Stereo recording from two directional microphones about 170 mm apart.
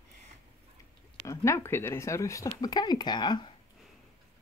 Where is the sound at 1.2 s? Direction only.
15° left (ahead or behind).